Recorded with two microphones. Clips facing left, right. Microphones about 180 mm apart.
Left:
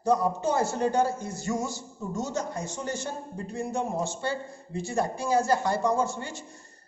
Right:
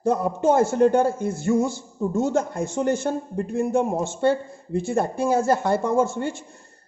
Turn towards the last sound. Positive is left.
turn(degrees=-55)  # may be behind; listen again after turning